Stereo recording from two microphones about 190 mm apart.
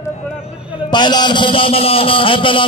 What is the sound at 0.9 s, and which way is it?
A man's voice, 25° left (ahead or behind).